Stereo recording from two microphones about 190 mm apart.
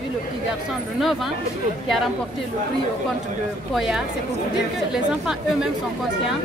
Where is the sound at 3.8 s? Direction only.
Centre (ahead or behind).